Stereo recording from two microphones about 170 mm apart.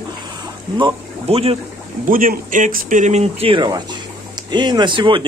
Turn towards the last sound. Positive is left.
turn(degrees=-30)  # may be behind; listen again after turning